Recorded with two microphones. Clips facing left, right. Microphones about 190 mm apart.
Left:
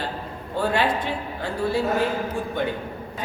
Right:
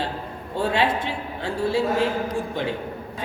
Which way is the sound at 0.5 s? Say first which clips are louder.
Even; 25° right (ahead or behind).